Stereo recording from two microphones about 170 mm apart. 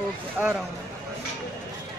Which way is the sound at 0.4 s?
10° right (ahead or behind).